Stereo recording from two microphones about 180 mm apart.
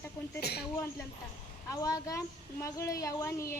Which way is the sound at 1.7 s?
20° left (ahead or behind).